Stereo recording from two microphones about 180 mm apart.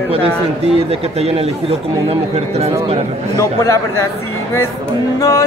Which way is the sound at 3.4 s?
15° left (ahead or behind).